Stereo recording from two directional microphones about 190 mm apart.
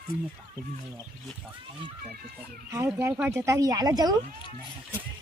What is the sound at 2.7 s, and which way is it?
Speech, 10° right (ahead or behind).